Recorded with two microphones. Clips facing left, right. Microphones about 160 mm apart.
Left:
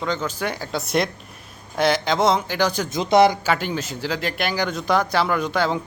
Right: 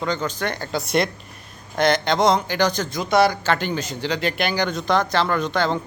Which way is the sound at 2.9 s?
25° left (ahead or behind).